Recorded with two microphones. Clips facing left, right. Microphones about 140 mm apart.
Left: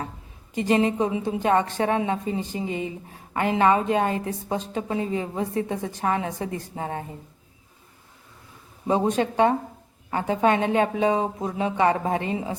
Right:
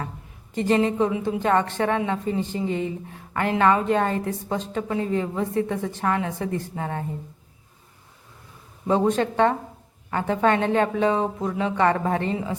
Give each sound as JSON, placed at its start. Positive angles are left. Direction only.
{"t": 0.5, "sound": "a woman's voice", "side_deg": 15}
{"t": 8.9, "sound": "a woman's voice", "side_deg": 15}